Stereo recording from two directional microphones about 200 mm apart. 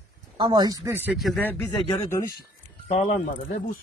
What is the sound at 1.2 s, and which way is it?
Speech, centre (ahead or behind).